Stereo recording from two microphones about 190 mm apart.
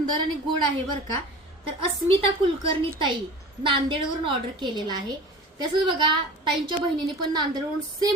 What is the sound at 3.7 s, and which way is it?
A woman's voice, 25° right (ahead or behind).